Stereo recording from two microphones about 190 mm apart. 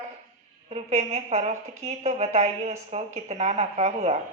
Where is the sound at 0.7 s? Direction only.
35° right (ahead or behind).